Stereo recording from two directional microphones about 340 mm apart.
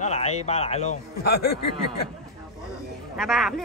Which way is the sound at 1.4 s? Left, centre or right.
Left.